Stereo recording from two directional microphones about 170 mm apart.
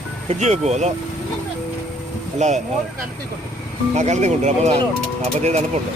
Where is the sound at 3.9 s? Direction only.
40° right (ahead or behind).